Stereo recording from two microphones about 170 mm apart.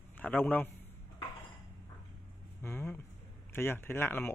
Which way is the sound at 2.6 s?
15° left (ahead or behind).